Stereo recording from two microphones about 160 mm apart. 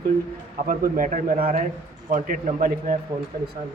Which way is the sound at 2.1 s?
55° right (ahead or behind).